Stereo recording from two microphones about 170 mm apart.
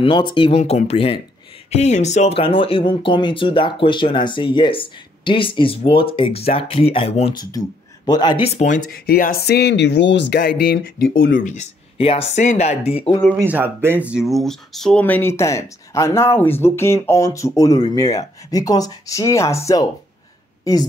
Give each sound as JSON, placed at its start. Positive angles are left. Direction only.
{"t": 0.0, "sound": "speech", "side_deg": 30}
{"t": 7.3, "sound": "speech", "side_deg": 25}
{"t": 8.5, "sound": "speech", "side_deg": 50}
{"t": 13.4, "sound": "speech", "side_deg": -10}